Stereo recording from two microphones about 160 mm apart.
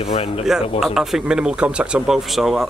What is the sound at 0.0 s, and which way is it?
Speech, 35° left (ahead or behind).